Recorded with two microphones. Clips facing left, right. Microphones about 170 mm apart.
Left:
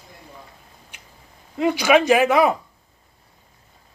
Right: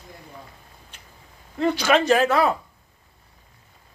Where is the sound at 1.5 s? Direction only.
10° left (ahead or behind).